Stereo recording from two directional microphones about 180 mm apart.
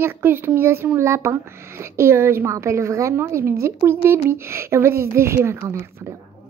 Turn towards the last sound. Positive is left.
turn(degrees=-15)  # may be behind; listen again after turning